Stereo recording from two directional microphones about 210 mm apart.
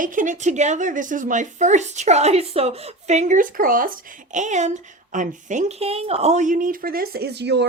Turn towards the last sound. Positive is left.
turn(degrees=-55)  # may be behind; listen again after turning